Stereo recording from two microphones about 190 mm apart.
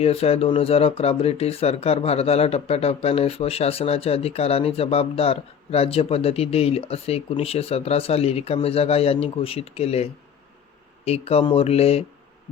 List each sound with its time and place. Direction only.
0.0 s speech: 30° left (ahead or behind)